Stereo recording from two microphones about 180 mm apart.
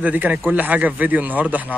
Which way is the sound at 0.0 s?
10° right (ahead or behind).